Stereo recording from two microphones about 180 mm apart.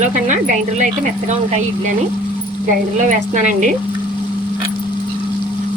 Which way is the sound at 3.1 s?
45° right (ahead or behind).